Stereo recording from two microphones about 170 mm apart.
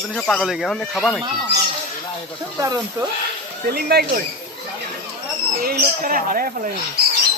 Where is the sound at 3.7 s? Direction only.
65° right (ahead or behind).